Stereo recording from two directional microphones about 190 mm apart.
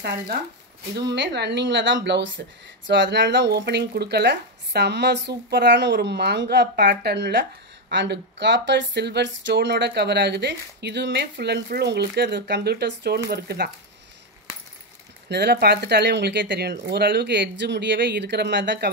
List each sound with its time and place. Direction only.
0.9 s speech: 65° right (ahead or behind)
15.2 s speech: 60° right (ahead or behind)